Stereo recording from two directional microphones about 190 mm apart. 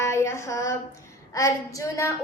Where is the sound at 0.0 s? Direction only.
15° left (ahead or behind).